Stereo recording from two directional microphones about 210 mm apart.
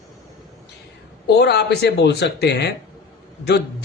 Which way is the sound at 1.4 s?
50° left (ahead or behind).